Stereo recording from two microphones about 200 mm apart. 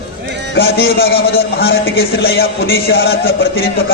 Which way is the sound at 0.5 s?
55° left (ahead or behind).